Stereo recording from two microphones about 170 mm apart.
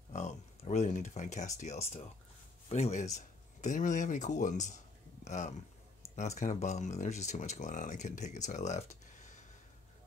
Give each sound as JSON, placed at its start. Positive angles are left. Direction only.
{"t": 0.1, "sound": "speech", "side_deg": 45}